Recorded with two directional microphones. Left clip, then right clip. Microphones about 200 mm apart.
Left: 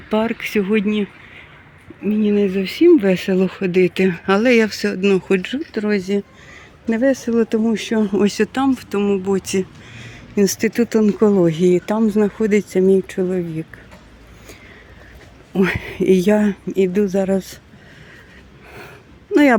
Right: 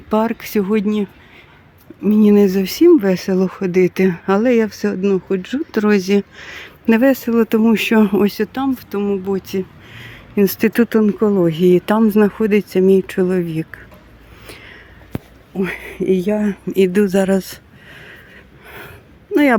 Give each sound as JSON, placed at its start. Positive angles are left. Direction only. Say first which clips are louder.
{"t": 0.1, "sound": "speech", "louder": "right 2 dB", "side_deg": -10}
{"t": 2.0, "sound": "speech", "louder": "right 5 dB", "side_deg": -30}
{"t": 2.8, "sound": "speech", "louder": "right 1 dB", "side_deg": -5}
{"t": 5.7, "sound": "speech", "louder": "right 5 dB", "side_deg": -25}
{"t": 7.1, "sound": "speech", "louder": "right 2 dB", "side_deg": -15}
{"t": 8.2, "sound": "speech", "louder": "left 1 dB", "side_deg": 0}
{"t": 10.0, "sound": "speech", "louder": "right 1 dB", "side_deg": -10}
{"t": 11.7, "sound": "speech", "louder": "right 3 dB", "side_deg": -15}
{"t": 15.5, "sound": "speech", "louder": "left 3 dB", "side_deg": 5}
{"t": 16.7, "sound": "speech", "louder": "right 3 dB", "side_deg": -20}
{"t": 18.7, "sound": "a sound", "louder": "right 2 dB", "side_deg": -5}